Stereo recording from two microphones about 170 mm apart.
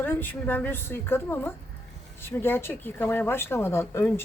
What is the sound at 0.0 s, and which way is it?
Speech, 10° left (ahead or behind).